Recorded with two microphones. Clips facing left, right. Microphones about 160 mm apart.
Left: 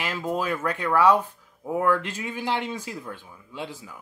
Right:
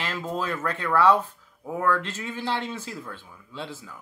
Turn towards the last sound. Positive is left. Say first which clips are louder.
# left 1 dB
turn(degrees=15)  # may be behind; listen again after turning